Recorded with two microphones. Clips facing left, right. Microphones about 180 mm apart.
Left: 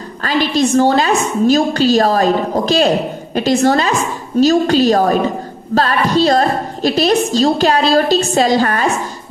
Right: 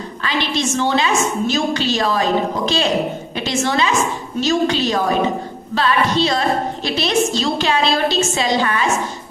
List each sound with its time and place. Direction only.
0.2 s a woman's voice: 40° left (ahead or behind)